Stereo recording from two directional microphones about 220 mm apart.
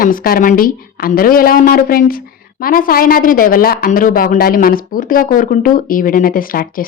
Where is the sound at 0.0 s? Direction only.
40° left (ahead or behind).